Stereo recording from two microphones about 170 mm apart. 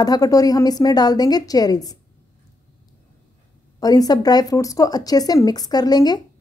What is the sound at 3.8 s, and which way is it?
A woman's voice, 20° left (ahead or behind).